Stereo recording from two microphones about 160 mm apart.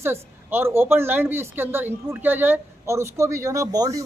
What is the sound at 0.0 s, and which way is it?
Speech, 15° right (ahead or behind).